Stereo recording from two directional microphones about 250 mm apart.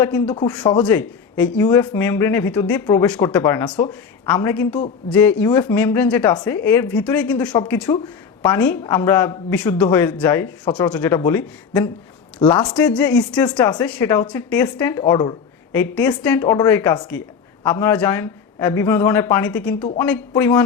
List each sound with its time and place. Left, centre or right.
0.0 s a man's voice: centre
12.8 s a man's voice: centre